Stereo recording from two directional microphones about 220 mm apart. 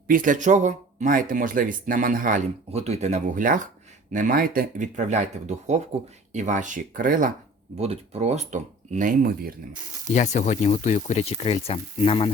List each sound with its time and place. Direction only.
0.1 s speech: 40° right (ahead or behind)
10.1 s speech: 35° left (ahead or behind)